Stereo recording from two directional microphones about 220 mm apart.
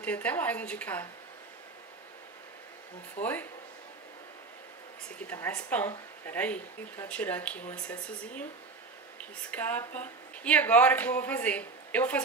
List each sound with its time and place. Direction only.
0.0 s speech: 5° left (ahead or behind)
3.2 s speech: 30° left (ahead or behind)
5.2 s speech: 10° left (ahead or behind)
9.5 s speech: 10° left (ahead or behind)